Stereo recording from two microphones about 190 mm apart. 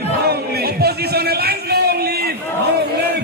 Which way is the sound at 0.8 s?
55° right (ahead or behind).